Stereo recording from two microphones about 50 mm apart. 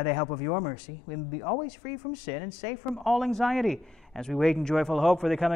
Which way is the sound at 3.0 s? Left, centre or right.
Centre.